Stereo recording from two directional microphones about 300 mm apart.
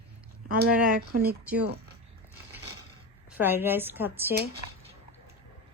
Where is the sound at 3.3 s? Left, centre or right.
Centre.